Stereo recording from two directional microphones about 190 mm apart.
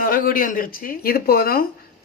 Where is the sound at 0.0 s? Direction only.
50° left (ahead or behind).